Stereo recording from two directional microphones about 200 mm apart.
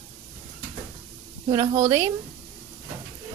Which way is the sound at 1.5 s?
20° right (ahead or behind).